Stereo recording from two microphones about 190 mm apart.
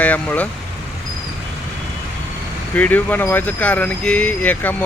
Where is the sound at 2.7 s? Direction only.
10° left (ahead or behind).